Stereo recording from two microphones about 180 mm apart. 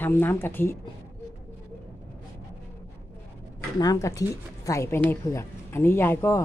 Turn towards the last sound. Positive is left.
turn(degrees=15)  # may be behind; listen again after turning